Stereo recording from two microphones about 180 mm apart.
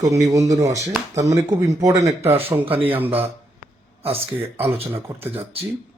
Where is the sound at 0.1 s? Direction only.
20° right (ahead or behind).